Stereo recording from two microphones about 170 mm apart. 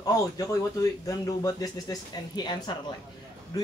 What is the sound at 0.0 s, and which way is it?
A man's voice, 20° left (ahead or behind).